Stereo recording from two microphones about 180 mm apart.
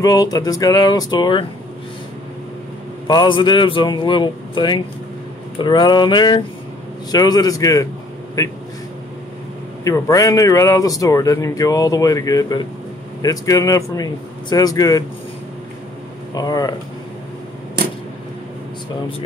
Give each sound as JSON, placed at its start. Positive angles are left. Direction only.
{"t": 0.0, "sound": "speech", "side_deg": 20}
{"t": 3.1, "sound": "speech", "side_deg": 25}
{"t": 9.8, "sound": "speech", "side_deg": 20}
{"t": 16.3, "sound": "speech", "side_deg": 20}